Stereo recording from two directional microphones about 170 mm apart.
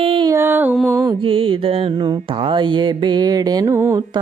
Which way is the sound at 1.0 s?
30° right (ahead or behind).